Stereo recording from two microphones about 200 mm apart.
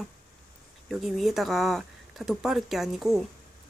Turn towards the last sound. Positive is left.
turn(degrees=0)  # may be behind; listen again after turning